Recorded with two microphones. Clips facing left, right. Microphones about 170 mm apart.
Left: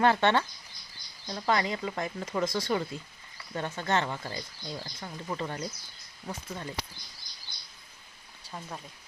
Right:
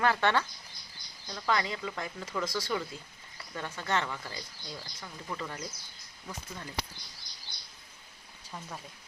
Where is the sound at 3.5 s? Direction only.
25° left (ahead or behind).